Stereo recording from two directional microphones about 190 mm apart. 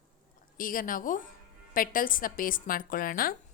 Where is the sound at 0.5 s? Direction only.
45° left (ahead or behind).